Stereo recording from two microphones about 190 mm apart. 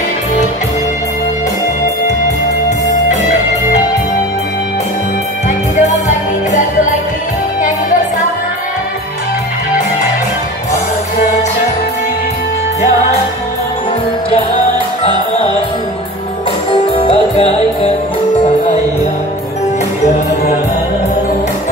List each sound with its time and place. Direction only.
5.8 s music: 40° left (ahead or behind)
16.9 s music: 30° left (ahead or behind)